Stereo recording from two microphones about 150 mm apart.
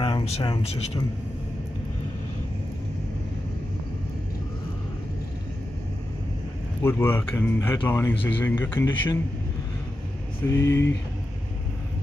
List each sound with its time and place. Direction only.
0.0 s speech: 40° left (ahead or behind)
6.8 s speech: 15° left (ahead or behind)
10.5 s speech: 15° left (ahead or behind)